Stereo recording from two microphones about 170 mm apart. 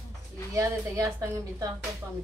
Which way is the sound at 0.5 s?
20° right (ahead or behind).